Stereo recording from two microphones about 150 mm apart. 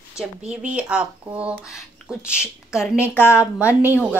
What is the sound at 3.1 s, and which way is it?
Speech, 15° left (ahead or behind).